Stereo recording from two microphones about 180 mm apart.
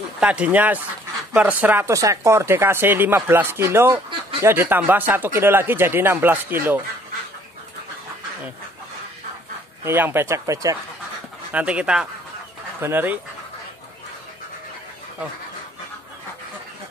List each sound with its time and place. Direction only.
0.2 s speech: 5° right (ahead or behind)
9.8 s speech: 10° right (ahead or behind)
11.5 s speech: 5° right (ahead or behind)